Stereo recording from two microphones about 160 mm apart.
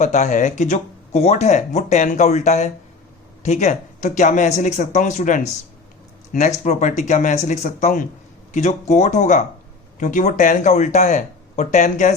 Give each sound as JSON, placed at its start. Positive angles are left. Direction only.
{"t": 0.0, "sound": "speech", "side_deg": 45}